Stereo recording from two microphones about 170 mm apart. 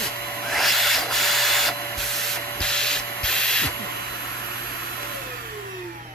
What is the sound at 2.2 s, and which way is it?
Sanding, 5° left (ahead or behind).